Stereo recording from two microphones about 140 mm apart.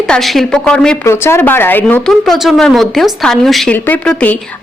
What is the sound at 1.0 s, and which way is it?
Speech, 15° left (ahead or behind).